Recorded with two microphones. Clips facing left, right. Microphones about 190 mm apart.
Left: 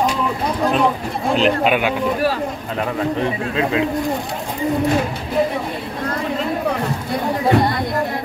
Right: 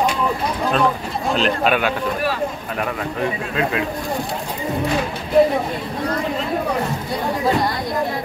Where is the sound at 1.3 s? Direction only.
15° left (ahead or behind).